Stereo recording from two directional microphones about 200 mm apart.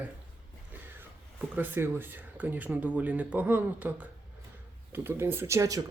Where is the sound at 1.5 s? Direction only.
10° right (ahead or behind).